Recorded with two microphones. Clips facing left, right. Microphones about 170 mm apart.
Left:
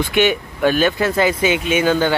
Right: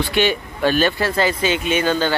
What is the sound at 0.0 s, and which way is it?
Speech, 15° left (ahead or behind).